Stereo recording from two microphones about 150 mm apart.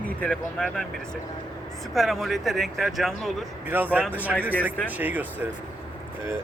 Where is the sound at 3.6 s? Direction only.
10° right (ahead or behind).